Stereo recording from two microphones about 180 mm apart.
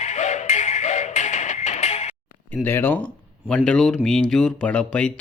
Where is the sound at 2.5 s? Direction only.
10° left (ahead or behind).